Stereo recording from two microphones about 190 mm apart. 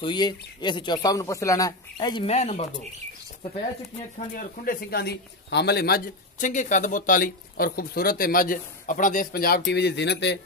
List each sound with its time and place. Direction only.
0.0 s speech: 25° left (ahead or behind)
2.2 s speech: 35° left (ahead or behind)
4.4 s a man's voice: 50° left (ahead or behind)